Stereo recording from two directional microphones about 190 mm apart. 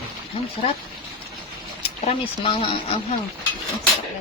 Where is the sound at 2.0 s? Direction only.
25° left (ahead or behind).